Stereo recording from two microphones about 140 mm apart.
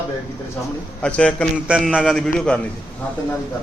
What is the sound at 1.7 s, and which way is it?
Speech, 5° right (ahead or behind).